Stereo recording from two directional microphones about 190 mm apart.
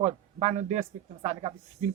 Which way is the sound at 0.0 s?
35° right (ahead or behind).